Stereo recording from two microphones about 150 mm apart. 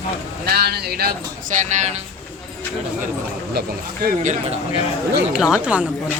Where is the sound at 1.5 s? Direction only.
55° right (ahead or behind).